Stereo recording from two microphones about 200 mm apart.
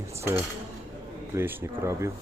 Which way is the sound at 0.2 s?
10° right (ahead or behind).